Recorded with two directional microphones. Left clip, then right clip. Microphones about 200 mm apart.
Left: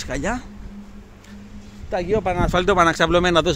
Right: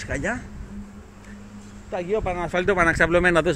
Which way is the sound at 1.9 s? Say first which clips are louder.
Left 4 dB; 40° left (ahead or behind).